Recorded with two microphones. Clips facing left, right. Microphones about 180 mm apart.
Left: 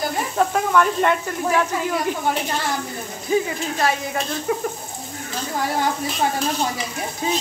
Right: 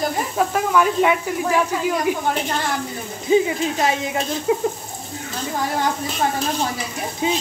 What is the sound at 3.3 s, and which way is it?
Speech, 20° right (ahead or behind).